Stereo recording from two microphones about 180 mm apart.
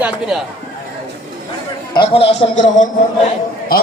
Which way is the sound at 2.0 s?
30° left (ahead or behind).